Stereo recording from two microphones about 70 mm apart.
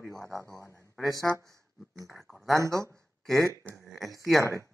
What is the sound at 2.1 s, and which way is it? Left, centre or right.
Speech, centre.